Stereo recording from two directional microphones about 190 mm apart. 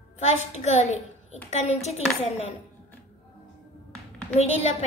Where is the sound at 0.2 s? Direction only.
35° left (ahead or behind).